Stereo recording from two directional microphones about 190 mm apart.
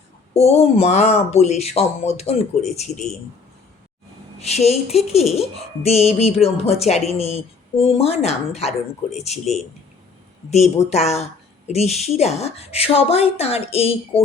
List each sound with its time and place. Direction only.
0.3 s speech: 35° left (ahead or behind)
4.4 s speech: 35° left (ahead or behind)